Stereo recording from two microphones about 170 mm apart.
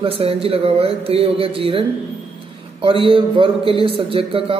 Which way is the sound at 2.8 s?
30° right (ahead or behind).